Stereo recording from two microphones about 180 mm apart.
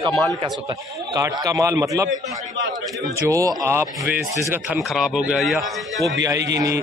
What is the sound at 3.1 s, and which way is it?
Speech, 15° right (ahead or behind).